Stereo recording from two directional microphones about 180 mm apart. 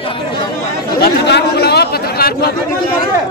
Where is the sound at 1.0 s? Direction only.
65° left (ahead or behind).